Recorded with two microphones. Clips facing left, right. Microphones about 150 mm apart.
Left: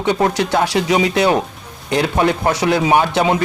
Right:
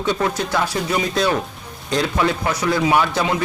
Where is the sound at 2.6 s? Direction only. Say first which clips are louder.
Left 2 dB; 65° left (ahead or behind).